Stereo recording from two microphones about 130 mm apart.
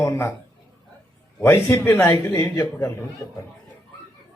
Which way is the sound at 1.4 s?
20° left (ahead or behind).